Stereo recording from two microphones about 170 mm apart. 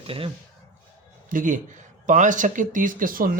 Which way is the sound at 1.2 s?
50° right (ahead or behind).